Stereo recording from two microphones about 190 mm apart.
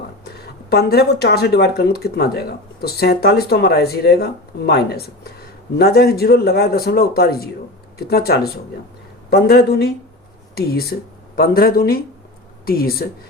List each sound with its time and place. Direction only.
0.3 s speech: 55° left (ahead or behind)